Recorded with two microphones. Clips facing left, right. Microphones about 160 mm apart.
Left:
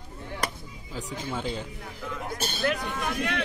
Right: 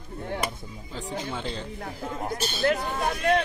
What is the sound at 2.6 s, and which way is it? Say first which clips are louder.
Speech: right 4 dB; 30° right (ahead or behind).